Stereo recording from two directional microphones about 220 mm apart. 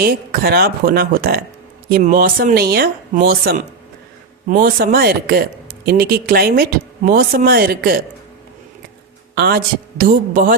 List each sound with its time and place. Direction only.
0.0 s speech: 45° right (ahead or behind)
9.3 s speech: 45° right (ahead or behind)